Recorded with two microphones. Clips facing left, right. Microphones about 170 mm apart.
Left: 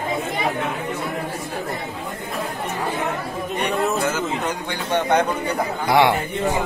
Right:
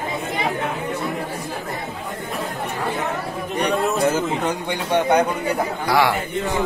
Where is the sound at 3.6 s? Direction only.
30° right (ahead or behind).